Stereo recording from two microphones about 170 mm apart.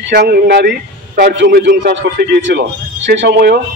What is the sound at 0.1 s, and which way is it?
A man's voice, 70° right (ahead or behind).